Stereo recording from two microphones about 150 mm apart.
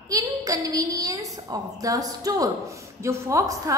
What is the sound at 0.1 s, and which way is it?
A woman's voice, 25° right (ahead or behind).